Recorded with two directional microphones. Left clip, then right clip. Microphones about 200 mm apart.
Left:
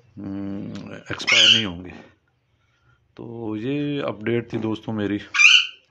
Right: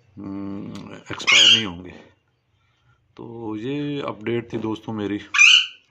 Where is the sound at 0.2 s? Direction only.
15° left (ahead or behind).